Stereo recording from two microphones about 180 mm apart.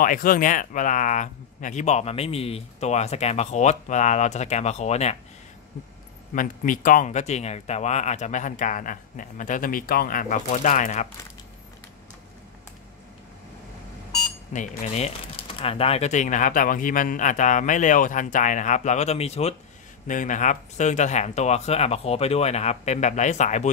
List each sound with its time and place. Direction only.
0.0 s speech: 50° left (ahead or behind)
6.3 s speech: 50° left (ahead or behind)
14.5 s speech: 45° left (ahead or behind)